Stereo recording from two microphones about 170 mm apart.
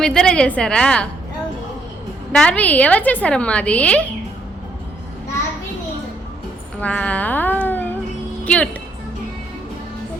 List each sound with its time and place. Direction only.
0.0 s a woman's voice: 5° left (ahead or behind)
2.3 s a woman's voice: 5° left (ahead or behind)
6.7 s a sound: 10° left (ahead or behind)
8.4 s a woman's voice: 5° left (ahead or behind)